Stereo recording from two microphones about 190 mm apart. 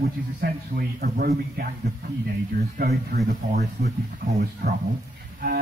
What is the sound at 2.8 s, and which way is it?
Speech, 55° right (ahead or behind).